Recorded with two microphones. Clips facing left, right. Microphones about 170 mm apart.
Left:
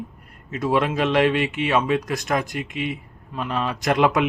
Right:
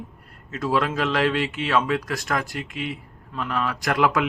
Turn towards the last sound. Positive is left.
turn(degrees=20)  # may be behind; listen again after turning